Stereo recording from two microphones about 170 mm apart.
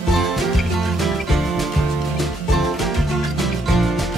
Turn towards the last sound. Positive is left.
turn(degrees=0)  # may be behind; listen again after turning